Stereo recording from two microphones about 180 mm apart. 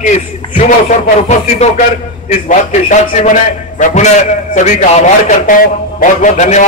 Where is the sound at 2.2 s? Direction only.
40° left (ahead or behind).